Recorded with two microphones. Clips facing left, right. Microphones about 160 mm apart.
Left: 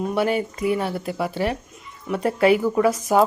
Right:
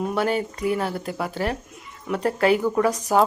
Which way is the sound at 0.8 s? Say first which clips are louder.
Left 2 dB; 10° left (ahead or behind).